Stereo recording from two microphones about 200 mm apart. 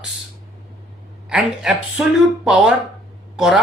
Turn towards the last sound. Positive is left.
turn(degrees=-5)  # may be behind; listen again after turning